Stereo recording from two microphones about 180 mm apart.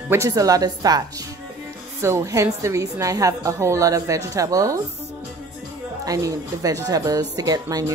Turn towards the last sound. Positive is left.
turn(degrees=-20)  # may be behind; listen again after turning